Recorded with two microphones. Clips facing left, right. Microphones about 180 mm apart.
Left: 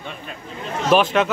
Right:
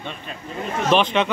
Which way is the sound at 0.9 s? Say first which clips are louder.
Left 2 dB; 5° left (ahead or behind).